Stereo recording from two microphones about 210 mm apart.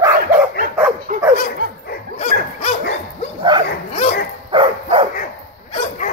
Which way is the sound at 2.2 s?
30° left (ahead or behind).